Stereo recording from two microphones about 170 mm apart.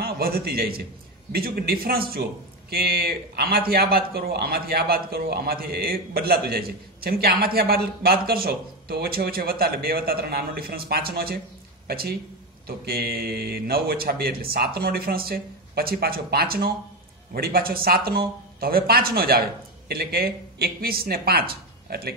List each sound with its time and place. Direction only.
0.0 s speech: 65° right (ahead or behind)